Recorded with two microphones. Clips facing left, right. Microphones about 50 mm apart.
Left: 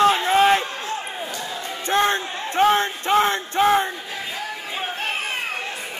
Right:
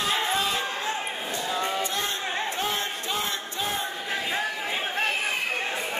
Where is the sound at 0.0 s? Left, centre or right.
Left.